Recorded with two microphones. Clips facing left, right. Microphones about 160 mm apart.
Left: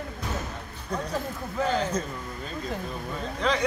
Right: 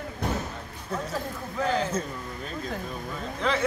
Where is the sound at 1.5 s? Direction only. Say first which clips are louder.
Even; centre (ahead or behind).